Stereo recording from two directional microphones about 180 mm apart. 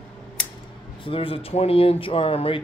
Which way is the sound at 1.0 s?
30° left (ahead or behind).